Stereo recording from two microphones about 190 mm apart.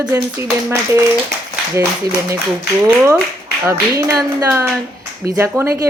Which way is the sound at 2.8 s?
15° right (ahead or behind).